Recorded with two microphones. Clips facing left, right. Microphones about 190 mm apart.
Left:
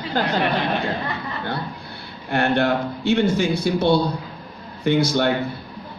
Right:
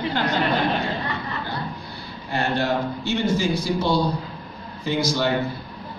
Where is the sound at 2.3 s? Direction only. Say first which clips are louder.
Left 4 dB; 60° left (ahead or behind).